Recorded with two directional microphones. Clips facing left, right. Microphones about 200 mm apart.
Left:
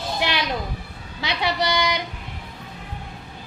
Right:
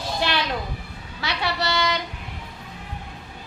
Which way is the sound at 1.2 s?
15° left (ahead or behind).